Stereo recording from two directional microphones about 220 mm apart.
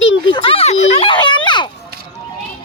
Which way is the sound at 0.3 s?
20° left (ahead or behind).